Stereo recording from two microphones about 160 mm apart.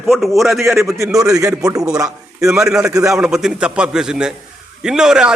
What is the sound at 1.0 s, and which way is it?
A man's voice, 20° right (ahead or behind).